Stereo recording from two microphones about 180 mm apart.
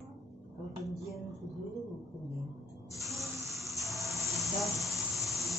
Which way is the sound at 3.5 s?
Centre (ahead or behind).